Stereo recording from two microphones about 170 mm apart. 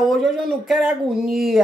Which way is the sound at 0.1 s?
Centre (ahead or behind).